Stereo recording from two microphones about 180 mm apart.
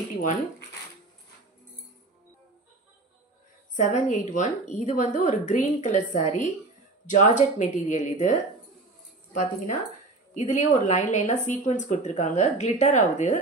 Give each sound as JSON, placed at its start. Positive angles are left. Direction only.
{"t": 3.7, "sound": "a woman's voice", "side_deg": 45}